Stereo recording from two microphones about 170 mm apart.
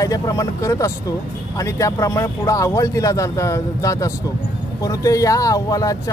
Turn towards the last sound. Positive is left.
turn(degrees=20)  # may be behind; listen again after turning